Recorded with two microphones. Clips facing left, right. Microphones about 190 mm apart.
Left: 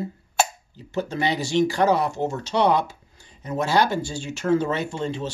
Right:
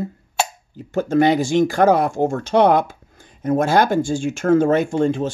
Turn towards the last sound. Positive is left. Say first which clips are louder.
# right 9 dB
turn(degrees=-50)  # may be behind; listen again after turning